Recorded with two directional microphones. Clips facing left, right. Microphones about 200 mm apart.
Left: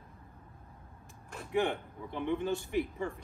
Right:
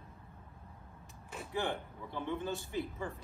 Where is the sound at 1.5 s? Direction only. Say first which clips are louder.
Left 6 dB; 15° left (ahead or behind).